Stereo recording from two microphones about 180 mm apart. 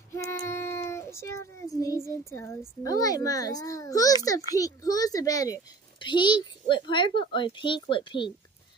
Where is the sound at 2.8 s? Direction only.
20° left (ahead or behind).